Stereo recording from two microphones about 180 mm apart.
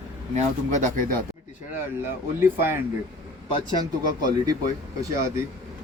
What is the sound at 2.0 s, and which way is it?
Speech, 10° right (ahead or behind).